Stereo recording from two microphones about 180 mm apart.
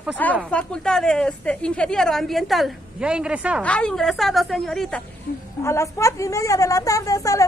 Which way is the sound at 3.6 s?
5° left (ahead or behind).